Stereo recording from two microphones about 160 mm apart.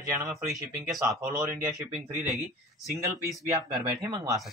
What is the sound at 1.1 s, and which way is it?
Speech, 20° right (ahead or behind).